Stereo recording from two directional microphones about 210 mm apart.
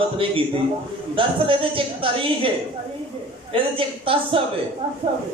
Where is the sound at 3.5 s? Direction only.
25° right (ahead or behind).